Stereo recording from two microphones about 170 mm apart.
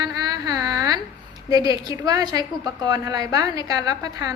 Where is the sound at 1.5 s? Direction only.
20° right (ahead or behind).